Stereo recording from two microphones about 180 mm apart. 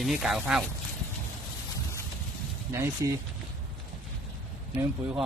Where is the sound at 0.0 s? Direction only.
5° right (ahead or behind).